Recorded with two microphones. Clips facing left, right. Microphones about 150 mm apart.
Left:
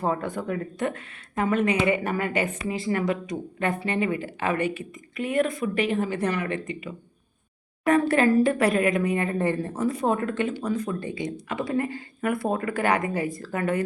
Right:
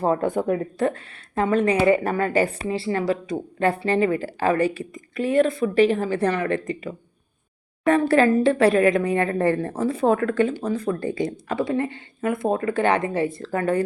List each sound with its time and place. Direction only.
0.0 s speech: 45° right (ahead or behind)
0.8 s a woman's voice: 35° right (ahead or behind)
9.5 s a woman's voice: 75° right (ahead or behind)
9.7 s a woman's voice: 30° right (ahead or behind)
11.0 s a woman's voice: 45° right (ahead or behind)
11.5 s speech: 30° right (ahead or behind)